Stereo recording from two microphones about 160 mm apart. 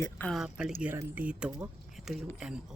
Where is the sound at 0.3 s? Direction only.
5° right (ahead or behind).